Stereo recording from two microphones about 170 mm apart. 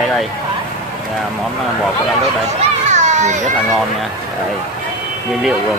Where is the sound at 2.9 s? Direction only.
45° right (ahead or behind).